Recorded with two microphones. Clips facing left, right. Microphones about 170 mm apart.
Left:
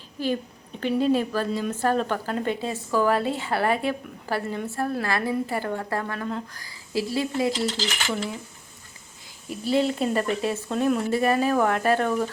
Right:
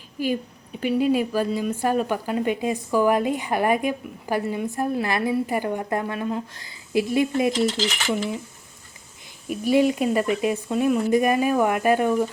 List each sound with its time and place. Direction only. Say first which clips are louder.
0.2 s a woman's voice: right 2 dB; 10° right (ahead or behind)
9.5 s a woman's voice: right 4 dB; 15° right (ahead or behind)